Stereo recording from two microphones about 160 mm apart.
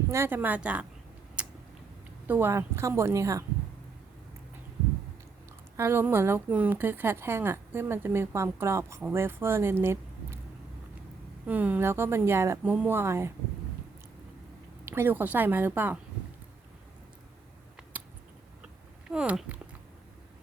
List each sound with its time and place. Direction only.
0.1 s a woman's voice: 15° right (ahead or behind)
1.4 s a sound: 5° right (ahead or behind)
2.2 s a woman's voice: 10° right (ahead or behind)
5.7 s a woman's voice: 15° right (ahead or behind)
11.4 s a woman's voice: 10° right (ahead or behind)
14.8 s a woman's voice: 15° right (ahead or behind)
19.0 s speech: 5° right (ahead or behind)